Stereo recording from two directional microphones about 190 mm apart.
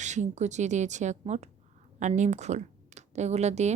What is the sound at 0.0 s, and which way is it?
A woman's voice, 40° right (ahead or behind).